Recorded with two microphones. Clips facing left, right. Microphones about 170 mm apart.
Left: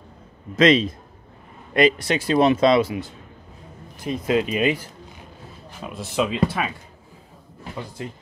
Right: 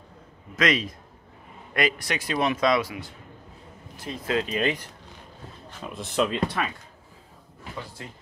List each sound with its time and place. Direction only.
0.6 s speech: 25° left (ahead or behind); by 6.7 s 5° left (ahead or behind)